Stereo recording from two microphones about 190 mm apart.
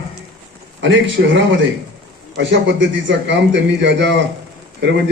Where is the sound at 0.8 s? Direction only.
85° right.